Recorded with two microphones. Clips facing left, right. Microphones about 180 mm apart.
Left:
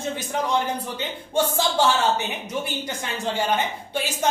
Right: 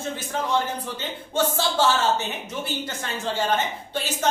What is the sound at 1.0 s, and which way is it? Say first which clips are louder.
Speech: left 1 dB; 15° left (ahead or behind).